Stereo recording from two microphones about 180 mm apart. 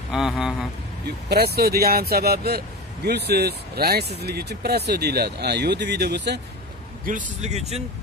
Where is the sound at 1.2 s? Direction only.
60° right (ahead or behind).